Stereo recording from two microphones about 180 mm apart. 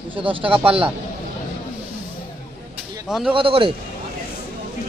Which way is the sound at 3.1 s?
5° right (ahead or behind).